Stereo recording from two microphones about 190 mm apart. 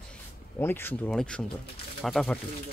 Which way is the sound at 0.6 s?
10° left (ahead or behind).